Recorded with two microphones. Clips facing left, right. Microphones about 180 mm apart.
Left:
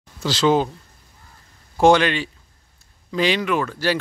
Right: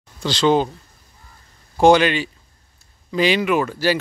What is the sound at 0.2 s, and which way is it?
Speech, 5° left (ahead or behind).